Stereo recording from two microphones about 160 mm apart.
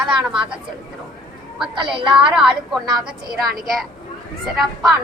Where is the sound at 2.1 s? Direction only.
5° right (ahead or behind).